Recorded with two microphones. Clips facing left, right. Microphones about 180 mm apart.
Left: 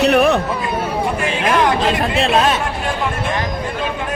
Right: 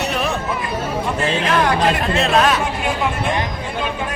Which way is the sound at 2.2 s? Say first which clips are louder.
Even; 25° left (ahead or behind).